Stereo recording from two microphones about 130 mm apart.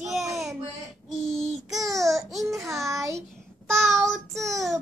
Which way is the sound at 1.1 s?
Centre (ahead or behind).